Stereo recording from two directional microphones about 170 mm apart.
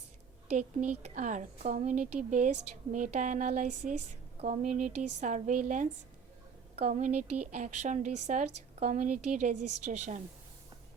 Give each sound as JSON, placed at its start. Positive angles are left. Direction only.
{"t": 0.4, "sound": "a woman's voice", "side_deg": -45}